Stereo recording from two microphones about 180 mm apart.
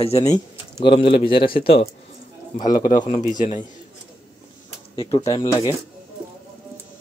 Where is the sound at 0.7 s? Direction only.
30° left (ahead or behind).